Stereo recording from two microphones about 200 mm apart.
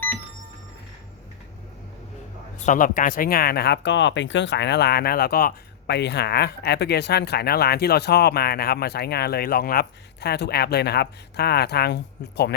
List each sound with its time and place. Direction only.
2.6 s speech: 40° left (ahead or behind)